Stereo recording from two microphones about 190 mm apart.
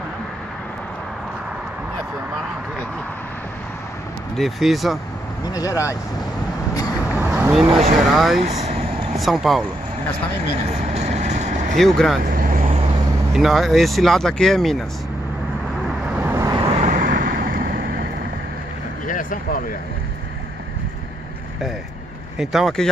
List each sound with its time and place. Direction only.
4.4 s speech: centre (ahead or behind)
5.4 s speech: 20° left (ahead or behind)
7.2 s vehicle: 10° right (ahead or behind)
8.0 s speech: centre (ahead or behind)
8.4 s speech: 35° right (ahead or behind)
9.1 s speech: centre (ahead or behind)
10.8 s vehicle: 35° right (ahead or behind)
11.7 s speech: centre (ahead or behind)
12.3 s vehicle: 45° right (ahead or behind)
13.3 s speech: centre (ahead or behind)
16.2 s vehicle: 15° right (ahead or behind)
16.8 s vehicle: 45° right (ahead or behind)
19.0 s a sound: 45° left (ahead or behind)
22.4 s speech: centre (ahead or behind)